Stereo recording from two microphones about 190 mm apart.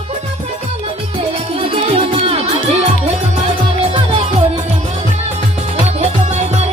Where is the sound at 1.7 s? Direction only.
30° right (ahead or behind).